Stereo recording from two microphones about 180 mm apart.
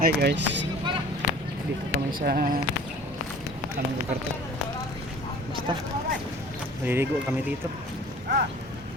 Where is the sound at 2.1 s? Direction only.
55° right (ahead or behind).